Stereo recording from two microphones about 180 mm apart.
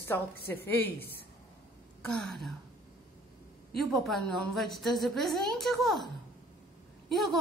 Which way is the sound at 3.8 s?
Centre (ahead or behind).